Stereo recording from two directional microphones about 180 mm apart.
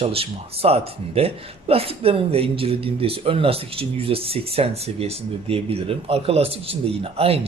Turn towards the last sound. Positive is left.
turn(degrees=-35)  # may be behind; listen again after turning